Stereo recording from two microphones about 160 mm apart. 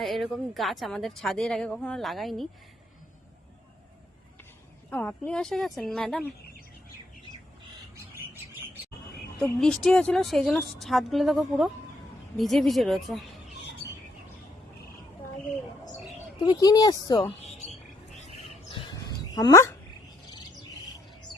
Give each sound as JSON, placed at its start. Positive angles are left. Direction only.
{"t": 0.0, "sound": "speech", "side_deg": 0}
{"t": 4.9, "sound": "speech", "side_deg": 10}
{"t": 9.1, "sound": "speech", "side_deg": 5}
{"t": 16.4, "sound": "speech", "side_deg": 25}
{"t": 18.9, "sound": "dog", "side_deg": 25}